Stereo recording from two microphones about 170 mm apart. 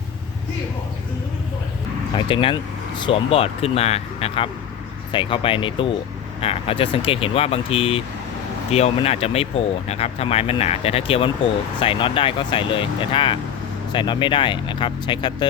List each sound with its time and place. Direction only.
2.1 s speech: 30° left (ahead or behind)